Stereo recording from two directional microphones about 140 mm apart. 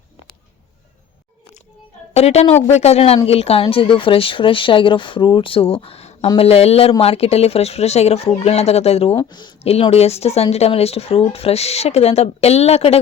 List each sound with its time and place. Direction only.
2.1 s a woman's voice: 50° left (ahead or behind)
9.1 s speech: 30° left (ahead or behind)
9.6 s speech: 45° left (ahead or behind)